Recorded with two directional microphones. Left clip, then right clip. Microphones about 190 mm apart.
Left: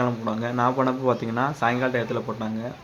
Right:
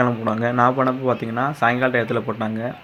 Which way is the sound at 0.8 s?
5° right (ahead or behind).